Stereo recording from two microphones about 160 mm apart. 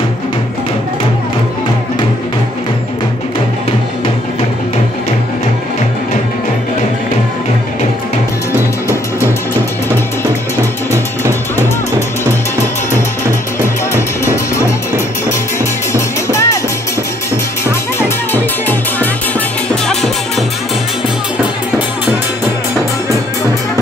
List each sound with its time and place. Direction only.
13.6 s music: 15° left (ahead or behind)
15.9 s music: 20° left (ahead or behind)
17.6 s music: 15° left (ahead or behind)